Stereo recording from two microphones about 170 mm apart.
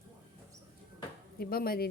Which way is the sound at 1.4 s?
60° left (ahead or behind).